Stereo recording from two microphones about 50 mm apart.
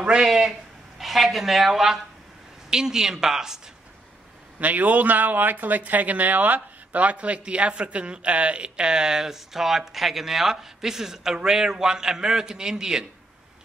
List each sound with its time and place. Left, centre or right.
0.0 s a man's voice: centre
4.6 s a man's voice: right; by 13.0 s centre